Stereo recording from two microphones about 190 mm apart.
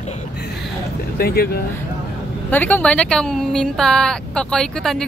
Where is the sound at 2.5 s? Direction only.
10° left (ahead or behind).